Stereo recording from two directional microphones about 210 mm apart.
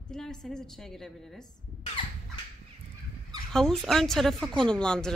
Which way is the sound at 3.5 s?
Centre (ahead or behind).